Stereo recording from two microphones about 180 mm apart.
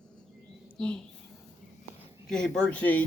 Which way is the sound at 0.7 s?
5° left (ahead or behind).